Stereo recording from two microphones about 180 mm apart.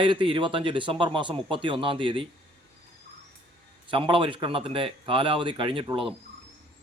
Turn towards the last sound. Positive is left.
turn(degrees=-30)  # may be behind; listen again after turning